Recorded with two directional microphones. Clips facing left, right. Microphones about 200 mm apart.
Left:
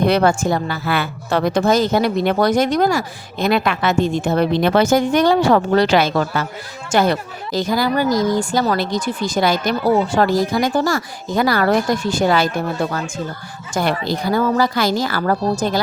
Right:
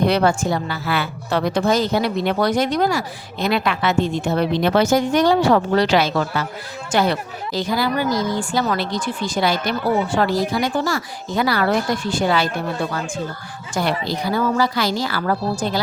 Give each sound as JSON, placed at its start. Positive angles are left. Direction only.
{"t": 0.0, "sound": "a woman's voice", "side_deg": 50}